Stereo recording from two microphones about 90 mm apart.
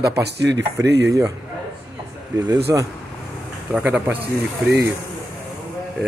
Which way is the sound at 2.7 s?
30° right (ahead or behind).